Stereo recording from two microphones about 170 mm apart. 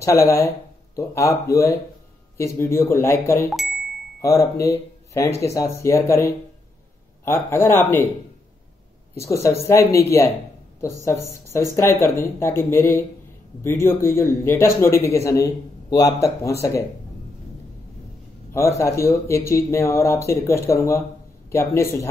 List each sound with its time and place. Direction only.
0.0 s speech: 15° left (ahead or behind)
9.1 s speech: 15° left (ahead or behind)
18.5 s speech: 15° left (ahead or behind)